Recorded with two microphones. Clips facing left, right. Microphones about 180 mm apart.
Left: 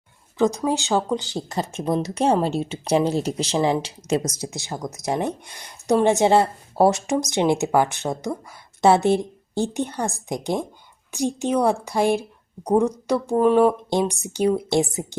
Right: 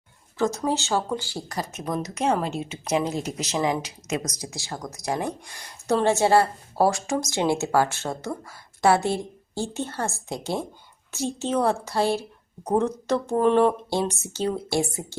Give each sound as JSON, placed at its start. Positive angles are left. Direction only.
{"t": 0.3, "sound": "speech", "side_deg": 15}